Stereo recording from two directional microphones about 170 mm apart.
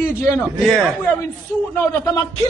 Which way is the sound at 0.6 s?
Centre (ahead or behind).